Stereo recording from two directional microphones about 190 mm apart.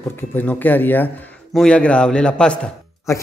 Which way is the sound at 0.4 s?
10° left (ahead or behind).